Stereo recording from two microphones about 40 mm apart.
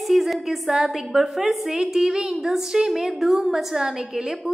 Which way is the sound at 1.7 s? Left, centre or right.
Centre.